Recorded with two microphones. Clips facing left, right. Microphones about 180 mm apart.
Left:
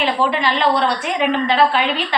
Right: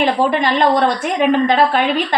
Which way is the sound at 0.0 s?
45° right (ahead or behind).